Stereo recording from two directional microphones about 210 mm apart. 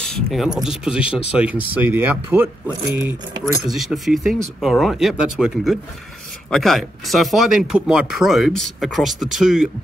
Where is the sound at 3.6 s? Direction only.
Centre (ahead or behind).